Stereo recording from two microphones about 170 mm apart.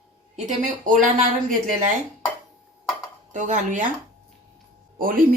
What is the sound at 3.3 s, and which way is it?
Speech, 50° right (ahead or behind).